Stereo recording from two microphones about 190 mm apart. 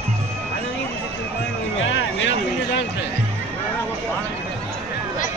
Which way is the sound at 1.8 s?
85° left.